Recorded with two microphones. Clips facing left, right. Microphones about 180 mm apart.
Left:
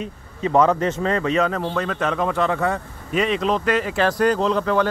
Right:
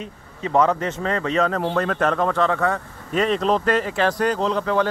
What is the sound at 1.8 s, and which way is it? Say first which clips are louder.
Speech: right 3 dB; 50° right (ahead or behind).